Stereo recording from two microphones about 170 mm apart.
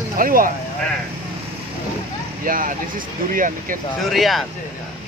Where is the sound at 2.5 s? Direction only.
55° right (ahead or behind).